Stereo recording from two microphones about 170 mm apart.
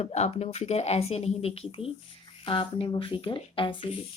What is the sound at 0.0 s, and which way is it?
Speech, 40° left (ahead or behind).